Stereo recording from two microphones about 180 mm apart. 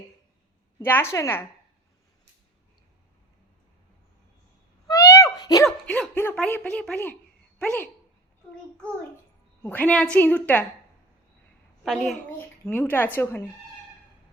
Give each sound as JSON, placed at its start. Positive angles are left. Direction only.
{"t": 0.8, "sound": "a woman's voice", "side_deg": 10}
{"t": 4.9, "sound": "a sound", "side_deg": 15}
{"t": 5.6, "sound": "a woman's voice", "side_deg": 5}
{"t": 9.6, "sound": "a woman's voice", "side_deg": 10}
{"t": 11.8, "sound": "a woman's voice", "side_deg": 0}
{"t": 12.6, "sound": "a woman's voice", "side_deg": 10}